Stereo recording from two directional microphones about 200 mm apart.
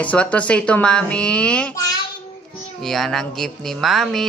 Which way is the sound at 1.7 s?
20° left (ahead or behind).